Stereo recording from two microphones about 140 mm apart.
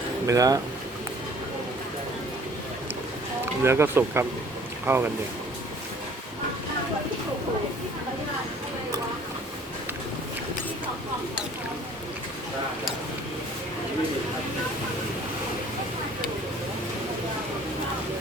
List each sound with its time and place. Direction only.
0.3 s speech: 25° right (ahead or behind)
3.4 s speech: 20° right (ahead or behind)